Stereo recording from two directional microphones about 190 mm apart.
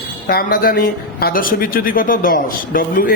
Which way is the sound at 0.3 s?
50° left (ahead or behind).